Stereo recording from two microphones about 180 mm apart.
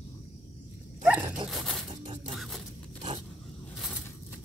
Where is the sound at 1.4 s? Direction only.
Centre (ahead or behind).